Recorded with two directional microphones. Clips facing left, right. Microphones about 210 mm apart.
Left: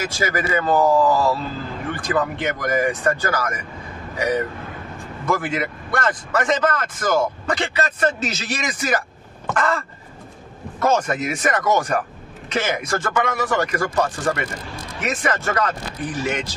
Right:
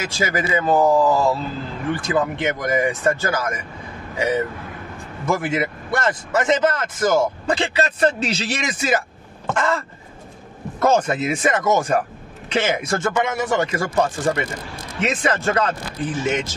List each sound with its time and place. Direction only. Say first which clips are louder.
0.0 s a man's voice: even; 25° right (ahead or behind)